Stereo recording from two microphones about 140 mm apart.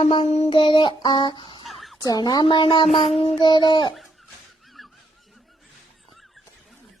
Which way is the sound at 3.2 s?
40° left (ahead or behind).